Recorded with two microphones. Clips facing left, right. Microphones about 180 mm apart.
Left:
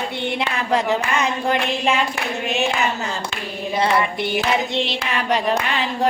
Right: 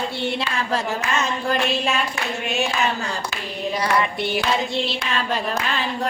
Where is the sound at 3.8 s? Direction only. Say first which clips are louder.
Left 3 dB; 25° left (ahead or behind).